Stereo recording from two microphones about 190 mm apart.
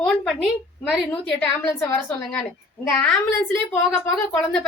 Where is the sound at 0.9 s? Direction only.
5° left (ahead or behind).